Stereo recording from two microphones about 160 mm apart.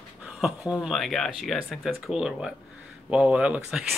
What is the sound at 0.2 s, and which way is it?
Speech, 5° right (ahead or behind).